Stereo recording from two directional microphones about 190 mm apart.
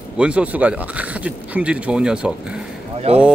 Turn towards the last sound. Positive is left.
turn(degrees=-35)  # may be behind; listen again after turning